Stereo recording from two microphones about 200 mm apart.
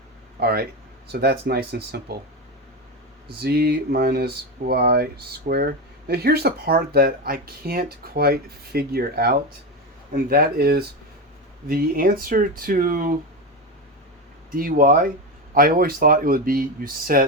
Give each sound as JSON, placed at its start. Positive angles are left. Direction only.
{"t": 0.3, "sound": "speech", "side_deg": -50}
{"t": 3.2, "sound": "speech", "side_deg": -55}
{"t": 14.5, "sound": "speech", "side_deg": -45}